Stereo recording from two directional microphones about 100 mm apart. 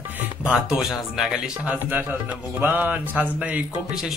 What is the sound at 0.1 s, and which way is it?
Speech, 10° right (ahead or behind).